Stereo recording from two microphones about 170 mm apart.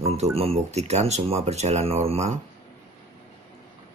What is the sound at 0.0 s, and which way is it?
Speech, 35° right (ahead or behind).